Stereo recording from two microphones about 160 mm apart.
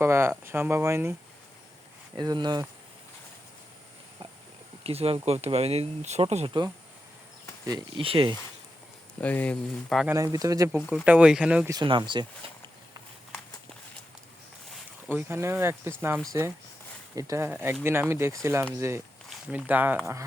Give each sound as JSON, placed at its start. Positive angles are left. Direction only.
{"t": 0.0, "sound": "speech", "side_deg": -15}
{"t": 2.1, "sound": "speech", "side_deg": -25}
{"t": 4.8, "sound": "speech", "side_deg": -40}
{"t": 7.6, "sound": "speech", "side_deg": -25}
{"t": 9.2, "sound": "speech", "side_deg": 10}
{"t": 10.2, "sound": "speech", "side_deg": -20}
{"t": 10.7, "sound": "speech", "side_deg": -5}
{"t": 11.7, "sound": "speech", "side_deg": -30}
{"t": 15.1, "sound": "speech", "side_deg": -15}